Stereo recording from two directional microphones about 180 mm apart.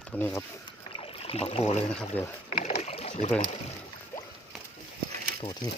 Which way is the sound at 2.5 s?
40° left (ahead or behind).